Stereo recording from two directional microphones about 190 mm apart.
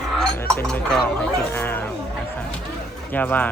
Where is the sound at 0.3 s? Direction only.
5° left (ahead or behind).